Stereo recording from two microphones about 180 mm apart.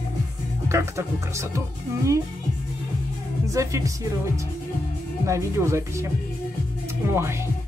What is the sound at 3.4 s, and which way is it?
Speech, 20° right (ahead or behind).